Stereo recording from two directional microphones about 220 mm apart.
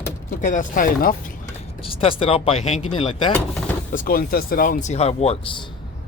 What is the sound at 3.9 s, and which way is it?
Speech, 40° left (ahead or behind).